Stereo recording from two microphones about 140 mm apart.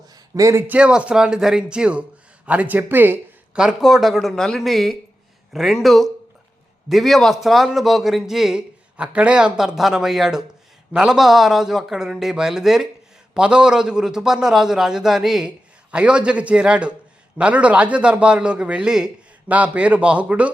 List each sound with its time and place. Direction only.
0.3 s a man's voice: 20° right (ahead or behind)
0.7 s a man's voice: 5° right (ahead or behind)